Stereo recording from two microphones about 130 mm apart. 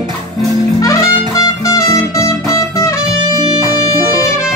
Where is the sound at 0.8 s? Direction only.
25° left (ahead or behind).